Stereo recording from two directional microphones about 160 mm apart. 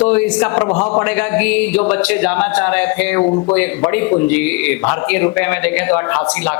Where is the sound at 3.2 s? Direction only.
30° left (ahead or behind).